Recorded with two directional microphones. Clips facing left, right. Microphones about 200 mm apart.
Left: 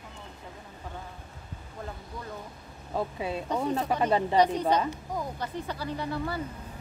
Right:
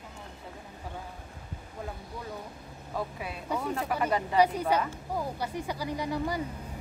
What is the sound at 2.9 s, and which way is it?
Speech, 25° left (ahead or behind).